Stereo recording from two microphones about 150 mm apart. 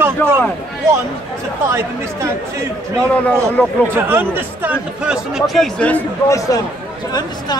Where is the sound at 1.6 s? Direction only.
20° right (ahead or behind).